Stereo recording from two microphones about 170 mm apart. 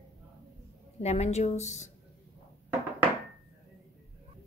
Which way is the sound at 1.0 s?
40° left (ahead or behind).